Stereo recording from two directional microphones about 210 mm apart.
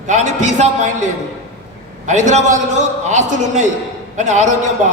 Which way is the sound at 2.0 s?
35° right (ahead or behind).